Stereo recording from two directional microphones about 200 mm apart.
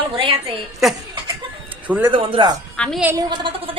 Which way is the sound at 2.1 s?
25° right (ahead or behind).